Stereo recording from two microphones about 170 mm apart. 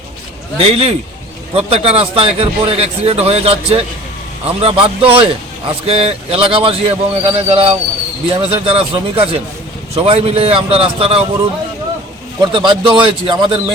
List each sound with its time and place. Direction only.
0.6 s a man's voice: 35° right (ahead or behind)
12.4 s a man's voice: 30° right (ahead or behind)